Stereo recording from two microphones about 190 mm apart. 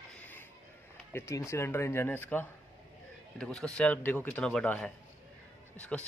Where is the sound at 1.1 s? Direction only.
15° left (ahead or behind).